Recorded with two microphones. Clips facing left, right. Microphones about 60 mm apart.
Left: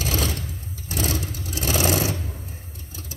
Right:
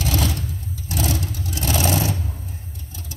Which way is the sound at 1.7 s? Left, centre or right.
Centre.